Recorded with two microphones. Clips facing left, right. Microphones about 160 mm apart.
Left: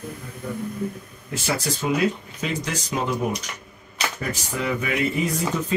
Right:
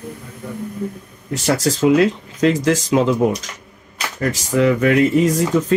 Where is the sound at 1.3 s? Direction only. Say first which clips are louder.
Right 8 dB; 85° right.